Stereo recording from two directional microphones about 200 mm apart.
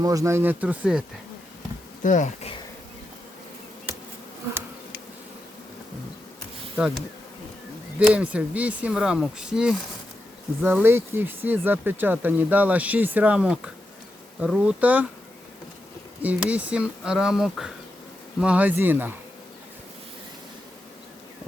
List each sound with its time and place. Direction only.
0.0 s speech: 15° right (ahead or behind)
2.0 s speech: 40° left (ahead or behind)
6.7 s bee: 5° right (ahead or behind)
7.9 s speech: 5° right (ahead or behind)
16.2 s speech: 5° right (ahead or behind)